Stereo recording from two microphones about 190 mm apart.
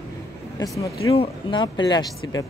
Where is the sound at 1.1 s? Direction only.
25° left (ahead or behind).